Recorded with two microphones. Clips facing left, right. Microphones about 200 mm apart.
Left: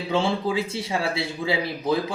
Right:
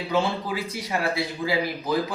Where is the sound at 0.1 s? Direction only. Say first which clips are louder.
Left 2 dB; 25° left (ahead or behind).